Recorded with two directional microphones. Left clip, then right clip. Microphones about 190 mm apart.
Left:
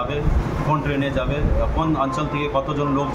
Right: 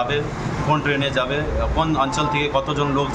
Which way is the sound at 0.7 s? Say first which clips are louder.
Right 3 dB; 5° right (ahead or behind).